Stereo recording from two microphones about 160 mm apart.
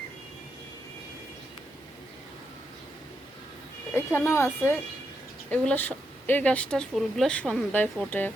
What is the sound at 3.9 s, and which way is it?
Speech, 15° left (ahead or behind).